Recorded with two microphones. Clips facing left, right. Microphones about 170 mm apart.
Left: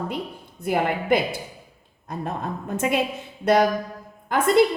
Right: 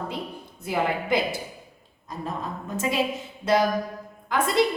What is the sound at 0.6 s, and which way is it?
A woman's voice, 55° left (ahead or behind).